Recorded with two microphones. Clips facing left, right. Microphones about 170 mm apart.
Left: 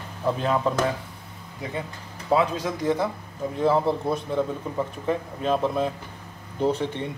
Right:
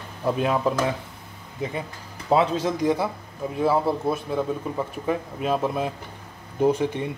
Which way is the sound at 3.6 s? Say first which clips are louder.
Even; 5° right (ahead or behind).